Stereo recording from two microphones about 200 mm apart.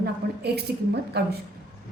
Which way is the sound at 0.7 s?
50° right (ahead or behind).